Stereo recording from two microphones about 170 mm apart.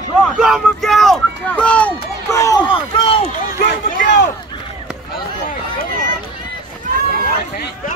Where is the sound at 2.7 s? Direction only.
30° left (ahead or behind).